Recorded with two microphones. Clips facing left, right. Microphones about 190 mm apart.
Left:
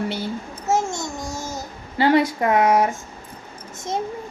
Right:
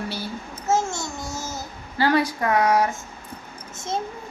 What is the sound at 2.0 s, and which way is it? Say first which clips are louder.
Speech: left 3 dB; 25° left (ahead or behind).